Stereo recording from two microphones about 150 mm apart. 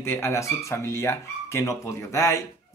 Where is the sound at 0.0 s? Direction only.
15° left (ahead or behind).